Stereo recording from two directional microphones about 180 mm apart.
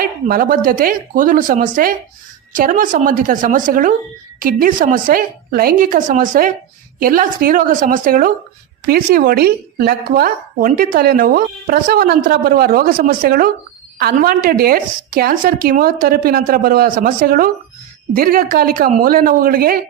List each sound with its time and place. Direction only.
0.0 s a woman's voice: 55° right (ahead or behind)